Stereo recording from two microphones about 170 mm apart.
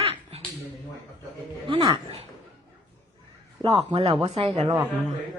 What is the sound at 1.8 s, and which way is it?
Speech, 20° right (ahead or behind).